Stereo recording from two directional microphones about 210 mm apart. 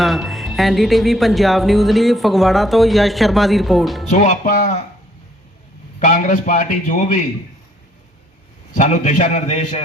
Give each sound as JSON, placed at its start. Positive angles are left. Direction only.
{"t": 0.0, "sound": "speech", "side_deg": 0}
{"t": 4.1, "sound": "a man's voice", "side_deg": 35}
{"t": 6.0, "sound": "a man's voice", "side_deg": 40}
{"t": 8.7, "sound": "a man's voice", "side_deg": 40}